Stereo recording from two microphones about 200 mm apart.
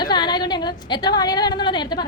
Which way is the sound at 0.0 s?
20° left (ahead or behind).